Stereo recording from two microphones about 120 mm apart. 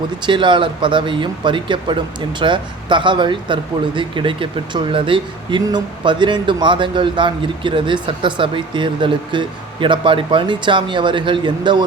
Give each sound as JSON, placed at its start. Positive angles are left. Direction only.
{"t": 0.3, "sound": "speech", "side_deg": -40}